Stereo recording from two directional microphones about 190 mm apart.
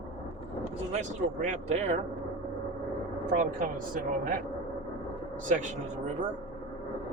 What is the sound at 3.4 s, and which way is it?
Speech, 45° right (ahead or behind).